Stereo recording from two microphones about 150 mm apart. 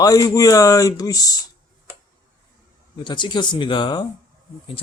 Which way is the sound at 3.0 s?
30° left (ahead or behind).